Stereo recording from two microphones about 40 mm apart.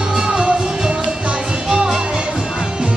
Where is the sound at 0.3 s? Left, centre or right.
Centre.